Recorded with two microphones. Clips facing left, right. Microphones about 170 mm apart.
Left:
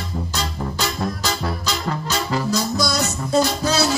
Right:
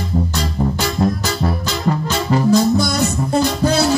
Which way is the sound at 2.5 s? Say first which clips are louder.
Right 10 dB; 55° right (ahead or behind).